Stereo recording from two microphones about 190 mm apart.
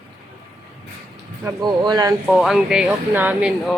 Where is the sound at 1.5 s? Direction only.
20° right (ahead or behind).